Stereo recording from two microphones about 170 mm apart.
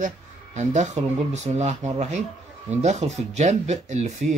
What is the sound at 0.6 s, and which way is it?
Speech, 45° right (ahead or behind).